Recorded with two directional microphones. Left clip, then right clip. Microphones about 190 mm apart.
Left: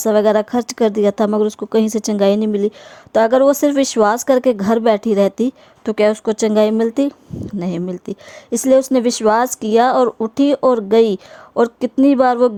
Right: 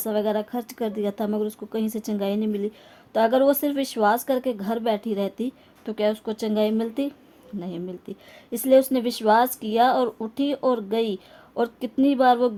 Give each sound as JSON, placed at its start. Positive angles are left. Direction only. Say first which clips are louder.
{"t": 0.0, "sound": "speech", "louder": "left 11 dB", "side_deg": 40}